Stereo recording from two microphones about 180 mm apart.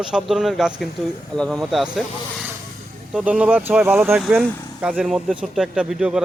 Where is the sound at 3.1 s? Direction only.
5° right (ahead or behind).